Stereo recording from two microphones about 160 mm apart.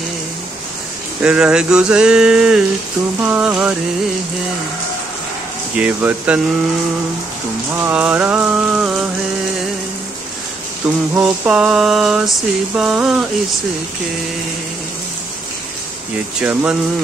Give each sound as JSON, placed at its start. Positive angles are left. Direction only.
{"t": 1.2, "sound": "a sound", "side_deg": -5}
{"t": 3.2, "sound": "raindrop", "side_deg": -10}
{"t": 5.8, "sound": "raindrop", "side_deg": -10}
{"t": 7.7, "sound": "raindrop", "side_deg": -10}
{"t": 10.8, "sound": "a sound", "side_deg": -5}
{"t": 16.3, "sound": "raindrop", "side_deg": -10}